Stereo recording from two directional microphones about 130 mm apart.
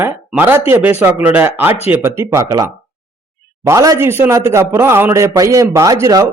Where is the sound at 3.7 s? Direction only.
25° right (ahead or behind).